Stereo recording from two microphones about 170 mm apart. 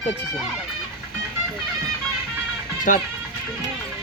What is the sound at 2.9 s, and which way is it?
Speech, 50° left (ahead or behind).